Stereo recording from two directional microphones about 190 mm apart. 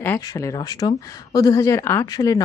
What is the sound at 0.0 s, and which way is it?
Speech, 15° left (ahead or behind).